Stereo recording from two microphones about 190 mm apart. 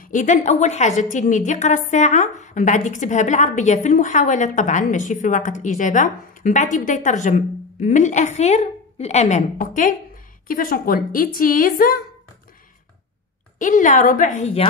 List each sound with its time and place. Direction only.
0.0 s a woman's voice: 40° left (ahead or behind)
13.6 s a woman's voice: 45° left (ahead or behind)